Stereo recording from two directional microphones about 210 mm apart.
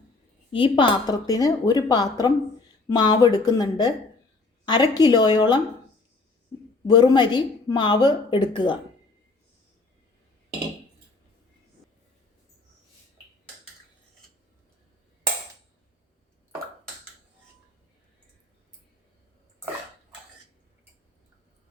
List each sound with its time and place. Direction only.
0.5 s a woman's voice: 25° left (ahead or behind)
6.8 s a woman's voice: 20° left (ahead or behind)